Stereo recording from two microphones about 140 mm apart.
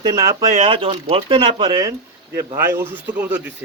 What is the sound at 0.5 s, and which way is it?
Speech, 45° right (ahead or behind).